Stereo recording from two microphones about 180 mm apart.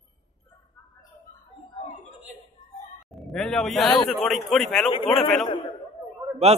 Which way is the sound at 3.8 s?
25° left (ahead or behind).